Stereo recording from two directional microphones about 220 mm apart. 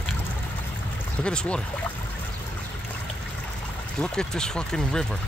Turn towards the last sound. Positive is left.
turn(degrees=5)  # may be behind; listen again after turning